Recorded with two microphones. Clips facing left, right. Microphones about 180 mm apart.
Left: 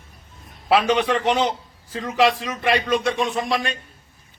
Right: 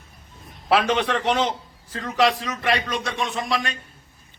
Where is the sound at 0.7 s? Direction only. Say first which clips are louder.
Left 2 dB; centre (ahead or behind).